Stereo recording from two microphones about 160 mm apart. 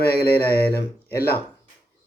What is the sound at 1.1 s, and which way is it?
Speech, 75° left (ahead or behind).